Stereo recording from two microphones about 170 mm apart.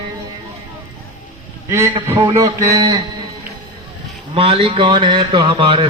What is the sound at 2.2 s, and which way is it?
Speech, 20° right (ahead or behind).